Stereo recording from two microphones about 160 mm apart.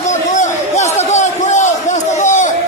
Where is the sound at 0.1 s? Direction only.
50° left (ahead or behind).